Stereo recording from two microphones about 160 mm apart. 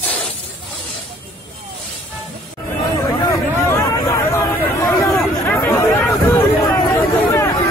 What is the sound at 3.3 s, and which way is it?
Chatter, 20° left (ahead or behind).